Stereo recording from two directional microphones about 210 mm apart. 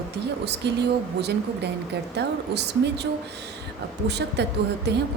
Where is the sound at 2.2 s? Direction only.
55° right (ahead or behind).